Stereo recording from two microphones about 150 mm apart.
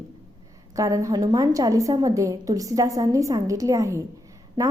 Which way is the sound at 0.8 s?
20° right (ahead or behind).